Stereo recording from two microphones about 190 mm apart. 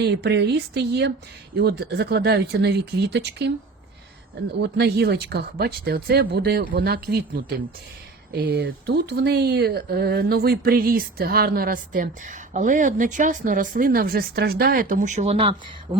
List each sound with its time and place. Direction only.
0.0 s speech: 60° right (ahead or behind)
4.6 s speech: 60° right (ahead or behind)
8.3 s speech: 55° right (ahead or behind); by 15.5 s 30° right (ahead or behind)